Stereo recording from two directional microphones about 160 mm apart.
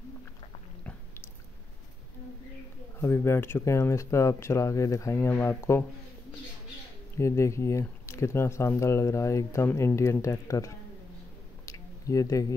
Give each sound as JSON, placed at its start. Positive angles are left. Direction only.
{"t": 3.0, "sound": "speech", "side_deg": 15}
{"t": 7.2, "sound": "speech", "side_deg": 20}
{"t": 11.6, "sound": "a sound", "side_deg": 20}